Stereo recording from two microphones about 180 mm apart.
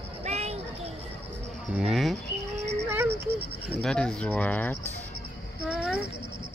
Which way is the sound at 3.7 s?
5° left (ahead or behind).